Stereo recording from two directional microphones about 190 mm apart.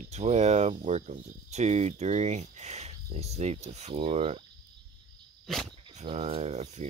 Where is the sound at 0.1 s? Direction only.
35° right (ahead or behind).